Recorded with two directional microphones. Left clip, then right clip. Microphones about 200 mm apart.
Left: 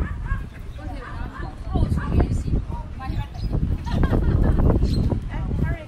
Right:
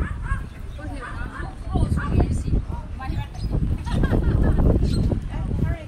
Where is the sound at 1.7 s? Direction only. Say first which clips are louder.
Even; 55° left (ahead or behind).